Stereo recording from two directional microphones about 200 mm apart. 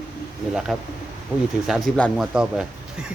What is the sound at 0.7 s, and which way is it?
Speech, centre (ahead or behind).